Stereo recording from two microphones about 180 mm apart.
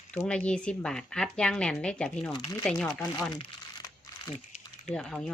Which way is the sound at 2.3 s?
25° left (ahead or behind).